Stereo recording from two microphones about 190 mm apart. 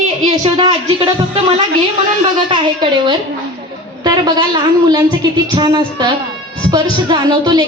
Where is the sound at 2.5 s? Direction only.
25° right (ahead or behind).